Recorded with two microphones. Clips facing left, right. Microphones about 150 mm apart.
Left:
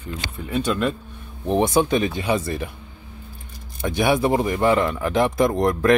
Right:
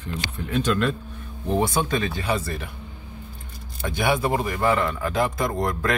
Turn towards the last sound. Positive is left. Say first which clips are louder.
# left 7 dB
turn(degrees=20)  # may be behind; listen again after turning